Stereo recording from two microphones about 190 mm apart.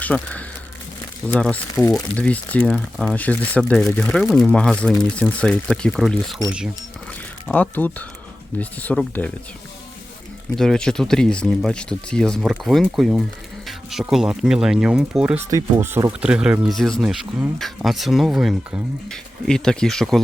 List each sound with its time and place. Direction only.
0.0 s speech: 10° left (ahead or behind)
7.4 s speech: 5° left (ahead or behind)
10.6 s speech: 5° left (ahead or behind)